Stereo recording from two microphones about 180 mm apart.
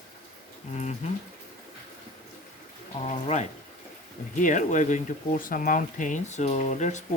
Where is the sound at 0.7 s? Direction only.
40° left (ahead or behind).